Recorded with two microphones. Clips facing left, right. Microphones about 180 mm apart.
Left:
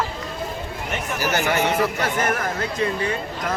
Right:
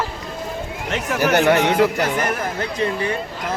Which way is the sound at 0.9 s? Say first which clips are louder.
Right 6 dB; 65° right (ahead or behind).